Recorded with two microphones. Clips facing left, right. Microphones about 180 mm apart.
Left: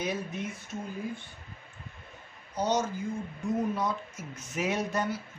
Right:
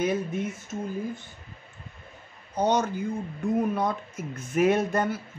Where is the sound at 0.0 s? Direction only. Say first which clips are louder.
Right 7 dB; 55° right (ahead or behind).